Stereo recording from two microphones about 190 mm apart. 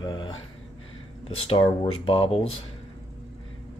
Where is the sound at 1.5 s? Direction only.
25° left (ahead or behind).